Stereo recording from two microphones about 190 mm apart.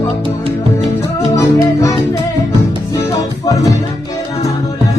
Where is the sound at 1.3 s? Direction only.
15° left (ahead or behind).